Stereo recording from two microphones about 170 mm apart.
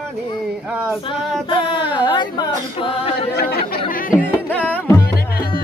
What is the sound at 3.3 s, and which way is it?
Chatter, 70° left (ahead or behind).